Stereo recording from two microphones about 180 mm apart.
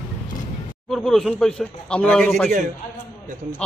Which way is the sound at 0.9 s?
Centre (ahead or behind).